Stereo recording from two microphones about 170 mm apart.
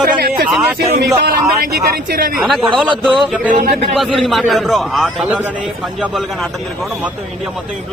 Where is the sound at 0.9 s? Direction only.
70° right (ahead or behind).